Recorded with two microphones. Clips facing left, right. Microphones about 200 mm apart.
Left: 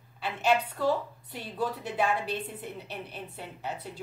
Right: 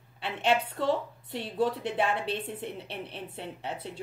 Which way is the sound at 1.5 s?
25° right (ahead or behind).